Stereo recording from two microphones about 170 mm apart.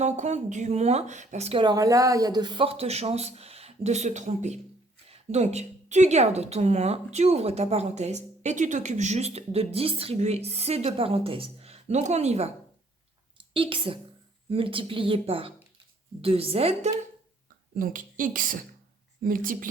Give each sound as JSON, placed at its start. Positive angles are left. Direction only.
{"t": 0.0, "sound": "a woman's voice", "side_deg": -45}
{"t": 13.5, "sound": "a woman's voice", "side_deg": -30}
{"t": 17.7, "sound": "speech", "side_deg": -55}